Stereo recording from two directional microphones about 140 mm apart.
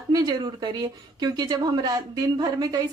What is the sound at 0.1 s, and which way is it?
Speech, 30° right (ahead or behind).